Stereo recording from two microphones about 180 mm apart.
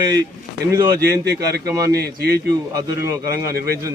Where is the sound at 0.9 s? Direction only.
60° right (ahead or behind).